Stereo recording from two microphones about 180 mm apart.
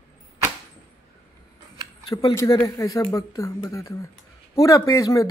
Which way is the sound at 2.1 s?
20° left (ahead or behind).